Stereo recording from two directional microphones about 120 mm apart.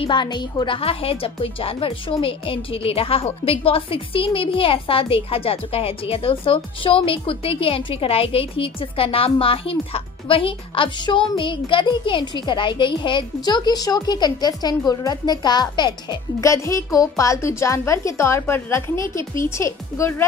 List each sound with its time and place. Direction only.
0.0 s a woman's voice: 40° left (ahead or behind)
16.4 s a woman's voice: 25° left (ahead or behind)